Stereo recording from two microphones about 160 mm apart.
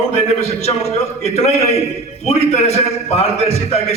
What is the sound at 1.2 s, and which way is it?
A man's voice, 40° left (ahead or behind).